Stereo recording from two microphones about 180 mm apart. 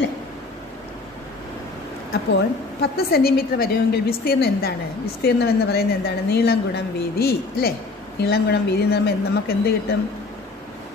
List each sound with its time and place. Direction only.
2.3 s a woman's voice: 65° left (ahead or behind)